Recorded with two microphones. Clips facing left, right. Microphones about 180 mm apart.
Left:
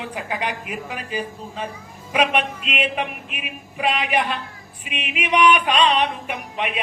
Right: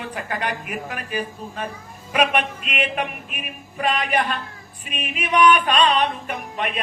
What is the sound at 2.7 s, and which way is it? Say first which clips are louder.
Speech: even; 10° left (ahead or behind).